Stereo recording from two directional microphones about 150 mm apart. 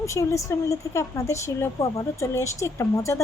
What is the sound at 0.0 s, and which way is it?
A woman's voice, 20° left (ahead or behind).